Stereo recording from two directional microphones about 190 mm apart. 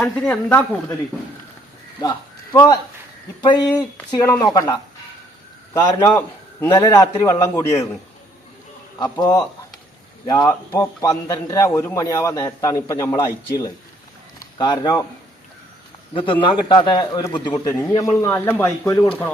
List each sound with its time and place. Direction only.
0.0 s a man's voice: 5° left (ahead or behind)
2.0 s a man's voice: 20° left (ahead or behind)
9.0 s a man's voice: 20° left (ahead or behind)
16.1 s a man's voice: 25° left (ahead or behind); by 19.0 s 10° left (ahead or behind)